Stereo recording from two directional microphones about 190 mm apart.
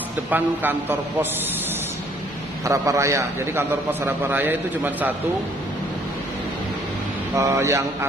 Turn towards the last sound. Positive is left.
turn(degrees=-15)  # may be behind; listen again after turning